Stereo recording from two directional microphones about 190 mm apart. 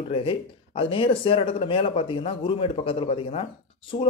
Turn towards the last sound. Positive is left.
turn(degrees=30)  # may be behind; listen again after turning